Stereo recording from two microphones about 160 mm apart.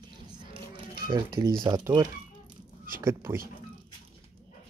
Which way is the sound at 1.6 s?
30° right (ahead or behind).